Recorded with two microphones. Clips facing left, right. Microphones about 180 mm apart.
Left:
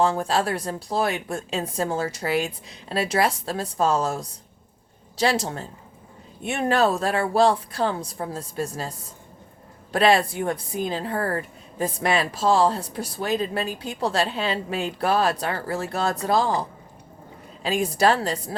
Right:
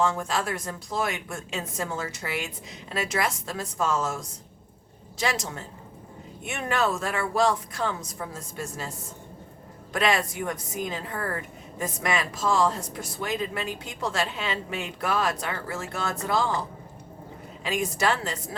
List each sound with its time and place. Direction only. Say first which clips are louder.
0.0 s speech: left 4 dB; 35° left (ahead or behind)